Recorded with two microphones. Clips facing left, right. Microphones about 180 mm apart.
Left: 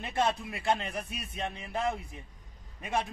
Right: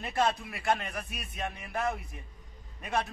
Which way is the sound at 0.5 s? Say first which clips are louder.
Even; 25° left (ahead or behind).